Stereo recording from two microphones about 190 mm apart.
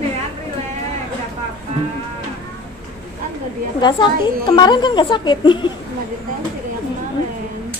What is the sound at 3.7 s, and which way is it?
A woman's voice, 25° left (ahead or behind).